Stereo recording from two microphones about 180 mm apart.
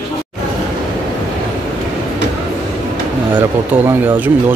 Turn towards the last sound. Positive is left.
turn(degrees=-10)  # may be behind; listen again after turning